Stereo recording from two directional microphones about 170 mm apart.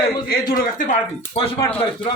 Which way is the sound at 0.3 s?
55° left (ahead or behind).